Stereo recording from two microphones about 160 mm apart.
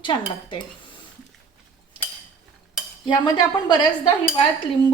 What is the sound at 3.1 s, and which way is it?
A woman's voice, 25° left (ahead or behind).